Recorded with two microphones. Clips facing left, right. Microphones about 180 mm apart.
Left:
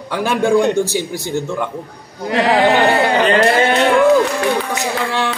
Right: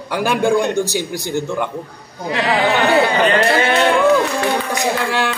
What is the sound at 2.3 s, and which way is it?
Speech, 40° left (ahead or behind).